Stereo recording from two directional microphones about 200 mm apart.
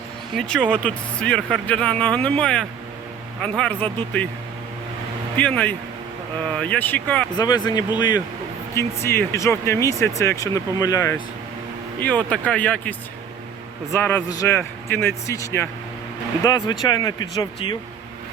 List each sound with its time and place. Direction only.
0.3 s speech: 5° left (ahead or behind)
5.4 s speech: 5° left (ahead or behind)
7.3 s speech: 20° left (ahead or behind)
13.9 s speech: 10° left (ahead or behind)